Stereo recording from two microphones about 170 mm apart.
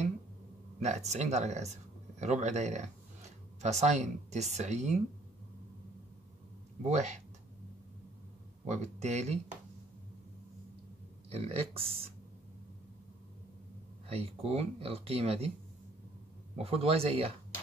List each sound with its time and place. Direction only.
0.8 s speech: 40° right (ahead or behind)
6.8 s speech: 40° right (ahead or behind)
8.6 s speech: 45° right (ahead or behind)
11.2 s speech: 35° right (ahead or behind)
14.0 s speech: 35° right (ahead or behind)
16.5 s speech: 35° right (ahead or behind)